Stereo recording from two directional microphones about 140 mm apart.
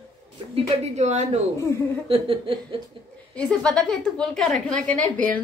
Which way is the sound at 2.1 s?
40° right (ahead or behind).